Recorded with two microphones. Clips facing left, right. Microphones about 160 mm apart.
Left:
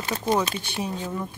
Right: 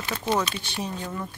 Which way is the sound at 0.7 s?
10° left (ahead or behind).